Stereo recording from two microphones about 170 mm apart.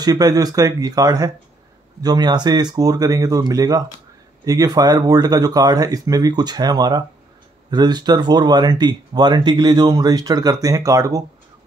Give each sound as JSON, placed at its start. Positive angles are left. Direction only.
{"t": 0.0, "sound": "speech", "side_deg": -20}